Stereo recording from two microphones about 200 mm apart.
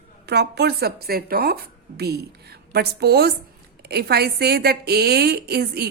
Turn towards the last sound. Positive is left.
turn(degrees=-50)  # may be behind; listen again after turning